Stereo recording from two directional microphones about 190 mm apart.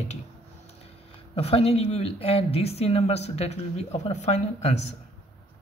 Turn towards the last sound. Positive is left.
turn(degrees=35)  # may be behind; listen again after turning